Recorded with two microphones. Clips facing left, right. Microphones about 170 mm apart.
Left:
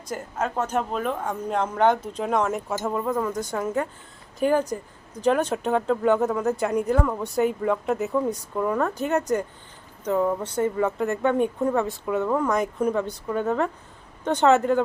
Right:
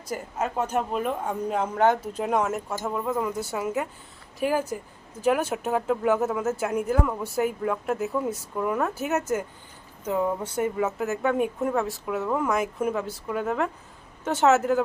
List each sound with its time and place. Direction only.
0.0 s speech: 10° right (ahead or behind)